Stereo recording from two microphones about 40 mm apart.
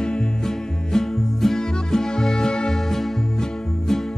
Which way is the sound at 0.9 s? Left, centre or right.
Centre.